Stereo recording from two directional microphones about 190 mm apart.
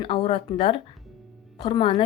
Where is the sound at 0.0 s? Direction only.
25° left (ahead or behind).